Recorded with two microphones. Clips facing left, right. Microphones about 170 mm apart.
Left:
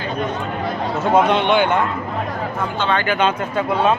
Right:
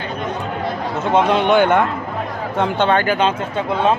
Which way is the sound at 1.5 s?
45° right (ahead or behind).